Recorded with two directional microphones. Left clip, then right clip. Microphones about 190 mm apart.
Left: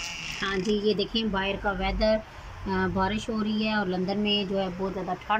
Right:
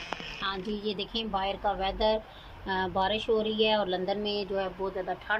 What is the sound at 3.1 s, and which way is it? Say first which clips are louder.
Speech: right 4 dB; 40° right (ahead or behind).